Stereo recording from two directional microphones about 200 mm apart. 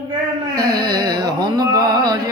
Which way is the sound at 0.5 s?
20° right (ahead or behind).